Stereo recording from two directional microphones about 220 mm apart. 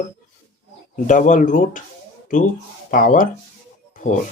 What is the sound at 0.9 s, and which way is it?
Speech, 35° left (ahead or behind).